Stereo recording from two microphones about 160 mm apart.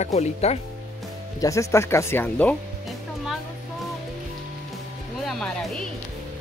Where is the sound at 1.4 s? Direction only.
20° left (ahead or behind).